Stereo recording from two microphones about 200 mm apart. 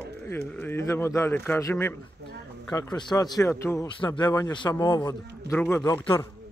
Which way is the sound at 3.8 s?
25° left (ahead or behind).